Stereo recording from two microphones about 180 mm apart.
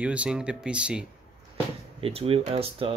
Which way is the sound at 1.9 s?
30° right (ahead or behind).